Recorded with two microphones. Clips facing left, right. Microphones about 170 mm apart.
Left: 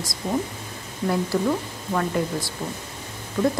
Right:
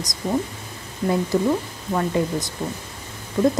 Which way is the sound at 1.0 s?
15° right (ahead or behind).